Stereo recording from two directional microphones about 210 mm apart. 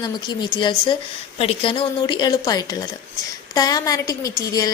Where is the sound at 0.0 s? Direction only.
20° left (ahead or behind).